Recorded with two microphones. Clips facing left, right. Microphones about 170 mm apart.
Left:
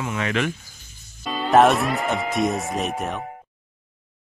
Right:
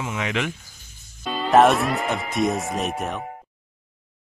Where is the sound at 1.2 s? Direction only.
Centre (ahead or behind).